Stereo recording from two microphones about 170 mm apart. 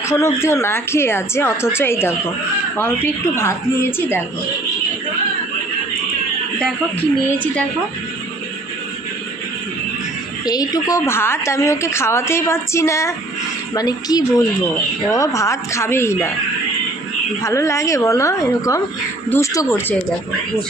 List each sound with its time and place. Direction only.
0.1 s a woman's voice: 15° left (ahead or behind)
10.4 s a woman's voice: 20° left (ahead or behind)
17.4 s a woman's voice: 15° left (ahead or behind)